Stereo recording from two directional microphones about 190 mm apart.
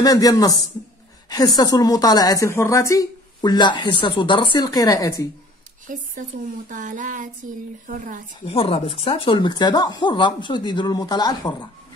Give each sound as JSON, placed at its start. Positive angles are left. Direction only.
{"t": 0.0, "sound": "a woman's voice", "side_deg": 20}
{"t": 5.9, "sound": "speech", "side_deg": -40}
{"t": 8.5, "sound": "a woman's voice", "side_deg": 30}